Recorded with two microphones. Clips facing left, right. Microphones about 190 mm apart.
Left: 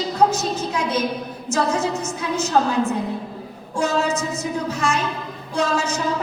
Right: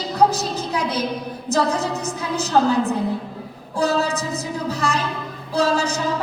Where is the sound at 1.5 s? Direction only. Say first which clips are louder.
Even; 35° right (ahead or behind).